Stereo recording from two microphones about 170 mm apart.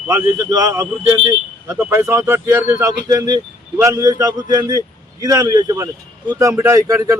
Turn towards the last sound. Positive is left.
turn(degrees=-20)  # may be behind; listen again after turning